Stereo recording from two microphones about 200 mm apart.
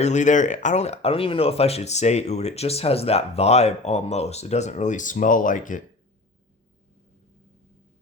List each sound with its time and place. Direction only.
0.0 s speech: 35° left (ahead or behind)